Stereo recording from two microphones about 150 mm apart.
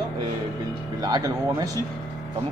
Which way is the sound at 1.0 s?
25° right (ahead or behind).